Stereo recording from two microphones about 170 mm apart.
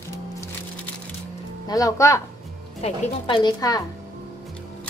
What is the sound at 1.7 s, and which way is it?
Speech, 20° left (ahead or behind).